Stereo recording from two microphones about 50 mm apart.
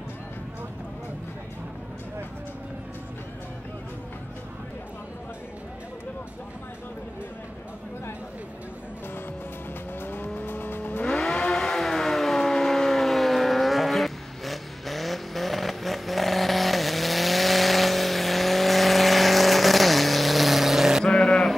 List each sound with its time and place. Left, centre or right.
10.0 s vehicle: left
11.1 s vehicle: centre
11.5 s civil defense siren: centre
21.0 s a sound: centre